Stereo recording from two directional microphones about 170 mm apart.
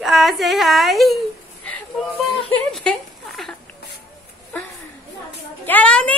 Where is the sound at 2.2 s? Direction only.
Centre (ahead or behind).